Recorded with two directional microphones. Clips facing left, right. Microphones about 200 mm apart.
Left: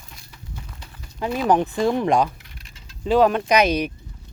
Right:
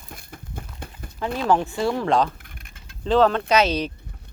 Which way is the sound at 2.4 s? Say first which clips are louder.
Even; 55° right (ahead or behind).